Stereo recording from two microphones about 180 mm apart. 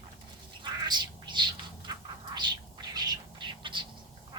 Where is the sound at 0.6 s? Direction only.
25° right (ahead or behind).